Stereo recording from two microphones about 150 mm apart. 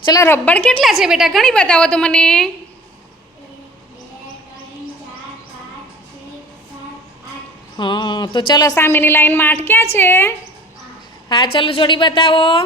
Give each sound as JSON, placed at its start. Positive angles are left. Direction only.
{"t": 0.0, "sound": "a woman's voice", "side_deg": 20}
{"t": 7.8, "sound": "a woman's voice", "side_deg": 30}
{"t": 11.3, "sound": "a woman's voice", "side_deg": 35}